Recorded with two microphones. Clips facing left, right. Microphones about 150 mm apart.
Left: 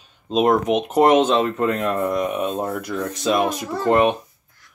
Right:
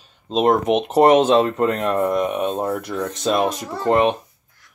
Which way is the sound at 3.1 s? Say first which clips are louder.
Even; 5° left (ahead or behind).